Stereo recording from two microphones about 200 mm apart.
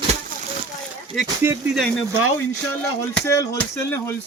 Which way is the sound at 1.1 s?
Centre (ahead or behind).